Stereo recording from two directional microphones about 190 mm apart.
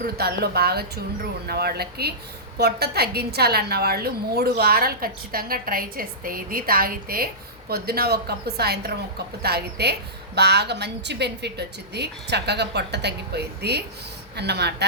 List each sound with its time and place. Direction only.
0.0 s a woman's voice: 55° right (ahead or behind)